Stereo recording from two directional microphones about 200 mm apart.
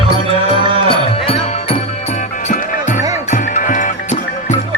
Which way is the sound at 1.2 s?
30° left (ahead or behind).